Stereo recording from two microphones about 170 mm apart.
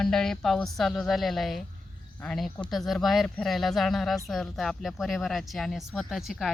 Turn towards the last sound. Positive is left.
turn(degrees=0)  # may be behind; listen again after turning